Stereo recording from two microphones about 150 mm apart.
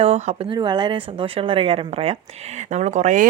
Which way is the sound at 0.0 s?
45° right (ahead or behind).